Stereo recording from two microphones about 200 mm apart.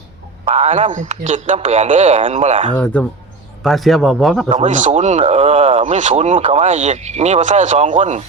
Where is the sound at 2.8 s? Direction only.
5° left (ahead or behind).